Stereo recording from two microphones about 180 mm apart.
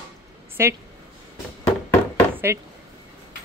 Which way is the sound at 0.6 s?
15° right (ahead or behind).